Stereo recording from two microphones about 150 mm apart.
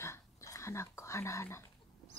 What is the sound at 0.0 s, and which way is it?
Whispering, 20° left (ahead or behind).